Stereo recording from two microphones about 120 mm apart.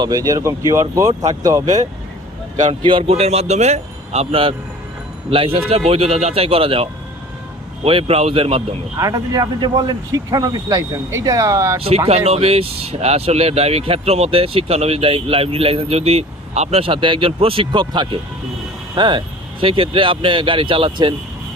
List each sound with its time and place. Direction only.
0.0 s speech: 30° right (ahead or behind)
2.8 s speech: 50° right (ahead or behind)
7.9 s speech: 50° right (ahead or behind)
9.0 s speech: 30° right (ahead or behind)
11.8 s speech: 55° right (ahead or behind)